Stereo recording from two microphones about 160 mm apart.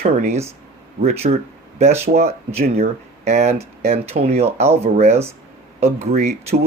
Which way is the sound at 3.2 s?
45° right (ahead or behind).